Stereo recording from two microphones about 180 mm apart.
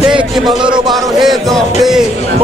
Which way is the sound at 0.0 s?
5° right (ahead or behind).